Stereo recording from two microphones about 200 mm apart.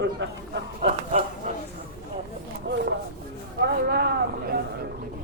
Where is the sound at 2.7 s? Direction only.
70° right (ahead or behind).